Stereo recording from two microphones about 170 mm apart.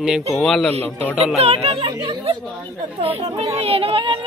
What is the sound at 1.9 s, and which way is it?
Speech, 20° right (ahead or behind).